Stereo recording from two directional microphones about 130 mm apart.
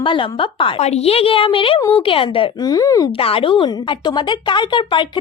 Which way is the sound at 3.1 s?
45° left (ahead or behind).